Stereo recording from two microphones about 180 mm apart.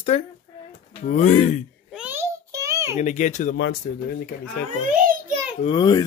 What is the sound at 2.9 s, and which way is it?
Speech, 40° left (ahead or behind).